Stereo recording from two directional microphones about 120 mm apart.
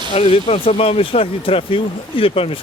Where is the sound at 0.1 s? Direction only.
55° left (ahead or behind).